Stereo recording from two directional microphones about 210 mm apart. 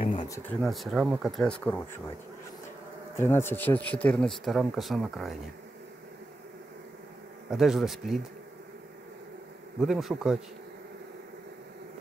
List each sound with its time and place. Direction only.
0.1 s a sound: 20° left (ahead or behind)
0.4 s speech: 5° left (ahead or behind)
3.2 s speech: 10° left (ahead or behind)
7.5 s speech: centre (ahead or behind)
9.8 s speech: centre (ahead or behind)